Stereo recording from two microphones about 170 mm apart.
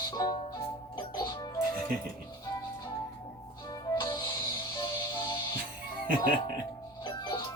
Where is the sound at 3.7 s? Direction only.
20° left (ahead or behind).